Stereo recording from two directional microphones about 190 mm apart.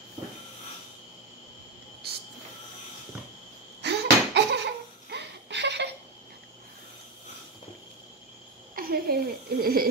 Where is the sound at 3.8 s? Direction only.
65° right (ahead or behind).